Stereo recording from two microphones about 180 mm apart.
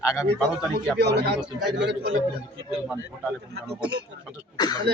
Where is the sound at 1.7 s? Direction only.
75° right (ahead or behind).